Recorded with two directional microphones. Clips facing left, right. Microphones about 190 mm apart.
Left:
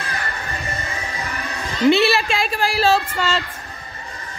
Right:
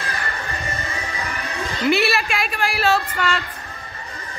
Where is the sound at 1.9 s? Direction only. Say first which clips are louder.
Left 4 dB; 30° left (ahead or behind).